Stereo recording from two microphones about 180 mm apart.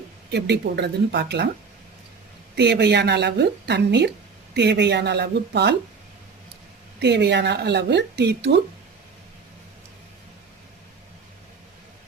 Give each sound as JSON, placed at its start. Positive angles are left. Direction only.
{"t": 0.3, "sound": "speech", "side_deg": -70}
{"t": 2.6, "sound": "speech", "side_deg": -70}
{"t": 7.0, "sound": "speech", "side_deg": -70}